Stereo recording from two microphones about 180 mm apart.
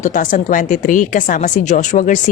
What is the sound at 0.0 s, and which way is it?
A woman's voice, 45° left (ahead or behind).